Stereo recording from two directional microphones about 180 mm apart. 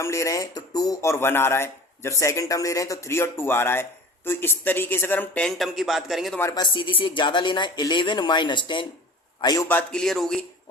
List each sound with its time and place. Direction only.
0.0 s speech: 15° left (ahead or behind); by 6.4 s centre (ahead or behind)
6.4 s speech: 25° left (ahead or behind)
9.6 s speech: 5° left (ahead or behind)